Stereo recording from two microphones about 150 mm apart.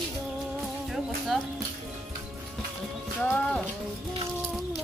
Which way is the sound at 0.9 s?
Centre (ahead or behind).